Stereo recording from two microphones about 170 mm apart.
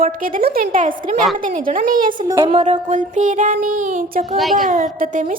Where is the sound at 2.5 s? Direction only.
40° right (ahead or behind).